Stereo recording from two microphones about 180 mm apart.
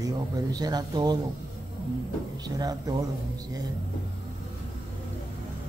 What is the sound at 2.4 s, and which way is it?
Speech, 20° right (ahead or behind).